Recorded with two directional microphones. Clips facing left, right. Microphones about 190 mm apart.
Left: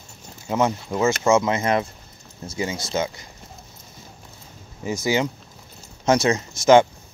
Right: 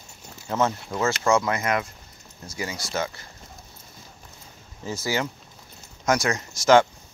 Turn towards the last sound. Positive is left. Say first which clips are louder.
# left 3 dB
turn(degrees=20)  # may be behind; listen again after turning